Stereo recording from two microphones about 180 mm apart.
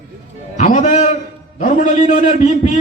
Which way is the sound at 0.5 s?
40° left (ahead or behind).